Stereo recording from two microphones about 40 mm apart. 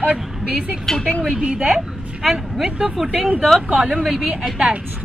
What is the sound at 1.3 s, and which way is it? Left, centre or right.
Speech, right.